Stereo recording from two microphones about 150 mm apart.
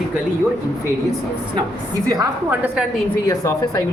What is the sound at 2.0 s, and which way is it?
Speech, 25° right (ahead or behind).